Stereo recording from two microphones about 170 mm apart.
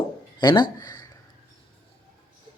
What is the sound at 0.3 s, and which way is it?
Speech, 25° left (ahead or behind).